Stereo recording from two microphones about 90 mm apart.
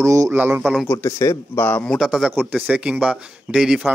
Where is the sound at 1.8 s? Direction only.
Centre (ahead or behind).